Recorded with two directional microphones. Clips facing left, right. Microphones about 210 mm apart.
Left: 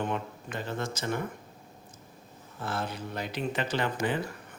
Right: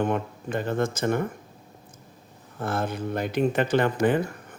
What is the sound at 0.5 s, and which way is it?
Speech, 50° right (ahead or behind).